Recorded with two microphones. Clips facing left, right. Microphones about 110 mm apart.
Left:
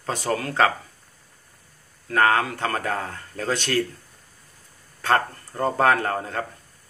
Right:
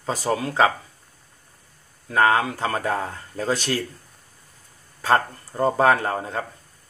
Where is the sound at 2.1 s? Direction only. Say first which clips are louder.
Right 1 dB; 15° right (ahead or behind).